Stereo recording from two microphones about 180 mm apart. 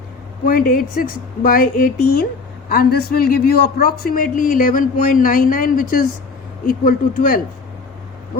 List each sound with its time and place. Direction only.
0.4 s a man's voice: 50° left (ahead or behind)